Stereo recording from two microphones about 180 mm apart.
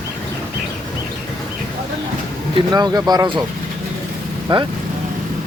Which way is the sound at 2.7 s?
20° right (ahead or behind).